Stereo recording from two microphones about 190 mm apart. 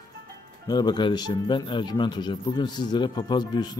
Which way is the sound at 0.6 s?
20° left (ahead or behind).